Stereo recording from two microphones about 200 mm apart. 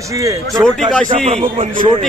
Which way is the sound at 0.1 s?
15° right (ahead or behind).